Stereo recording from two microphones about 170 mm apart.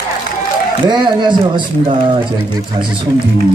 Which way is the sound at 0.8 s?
25° right (ahead or behind).